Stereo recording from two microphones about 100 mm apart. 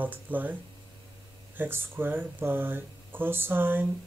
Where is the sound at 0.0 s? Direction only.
20° right (ahead or behind).